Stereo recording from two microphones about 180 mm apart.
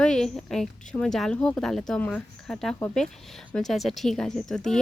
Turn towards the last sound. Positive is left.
turn(degrees=0)  # may be behind; listen again after turning